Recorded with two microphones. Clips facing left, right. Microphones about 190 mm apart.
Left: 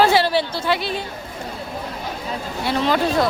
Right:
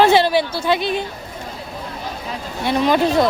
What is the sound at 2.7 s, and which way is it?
Speech, 20° right (ahead or behind).